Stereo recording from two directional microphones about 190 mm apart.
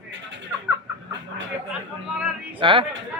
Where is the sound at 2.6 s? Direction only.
25° right (ahead or behind).